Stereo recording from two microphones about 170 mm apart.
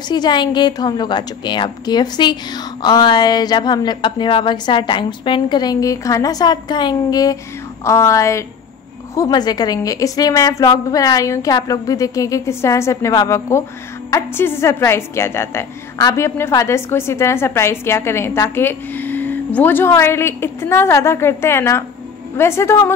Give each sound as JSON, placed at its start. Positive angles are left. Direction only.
{"t": 0.1, "sound": "a woman's voice", "side_deg": 25}